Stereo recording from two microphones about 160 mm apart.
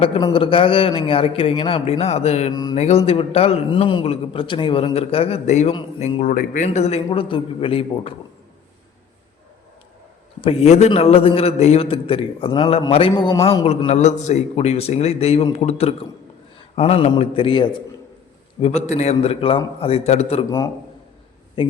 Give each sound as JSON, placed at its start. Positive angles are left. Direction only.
{"t": 0.0, "sound": "a man's voice", "side_deg": 35}
{"t": 2.5, "sound": "a sound", "side_deg": 25}
{"t": 2.7, "sound": "a man's voice", "side_deg": 40}
{"t": 6.3, "sound": "speech", "side_deg": 60}
{"t": 6.7, "sound": "a man's voice", "side_deg": 40}
{"t": 10.4, "sound": "a man's voice", "side_deg": 40}
{"t": 13.7, "sound": "a man's voice", "side_deg": 45}
{"t": 18.6, "sound": "a man's voice", "side_deg": 45}
{"t": 21.6, "sound": "speech", "side_deg": 30}